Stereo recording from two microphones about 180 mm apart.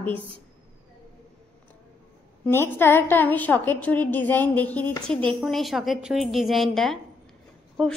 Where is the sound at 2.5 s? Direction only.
10° left (ahead or behind).